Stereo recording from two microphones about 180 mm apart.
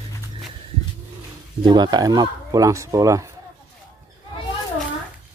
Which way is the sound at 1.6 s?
25° right (ahead or behind).